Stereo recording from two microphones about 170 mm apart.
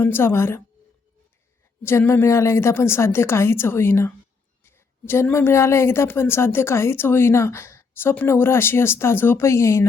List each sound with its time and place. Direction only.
0.0 s speech: 15° left (ahead or behind)
1.8 s speech: 15° left (ahead or behind)